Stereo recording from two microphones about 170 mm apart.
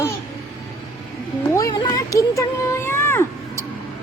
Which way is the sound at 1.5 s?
25° left (ahead or behind).